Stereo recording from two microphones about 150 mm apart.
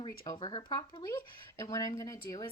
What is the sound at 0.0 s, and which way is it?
Speech, 30° left (ahead or behind).